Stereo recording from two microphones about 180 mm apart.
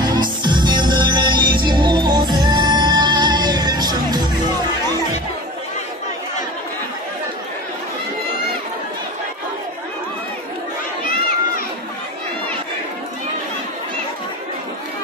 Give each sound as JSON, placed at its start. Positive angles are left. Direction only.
{"t": 0.0, "sound": "music", "side_deg": -25}